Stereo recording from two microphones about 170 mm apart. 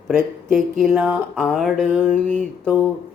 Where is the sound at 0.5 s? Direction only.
Centre (ahead or behind).